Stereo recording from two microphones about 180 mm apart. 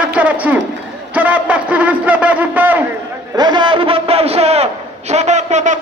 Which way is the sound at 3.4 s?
25° right (ahead or behind).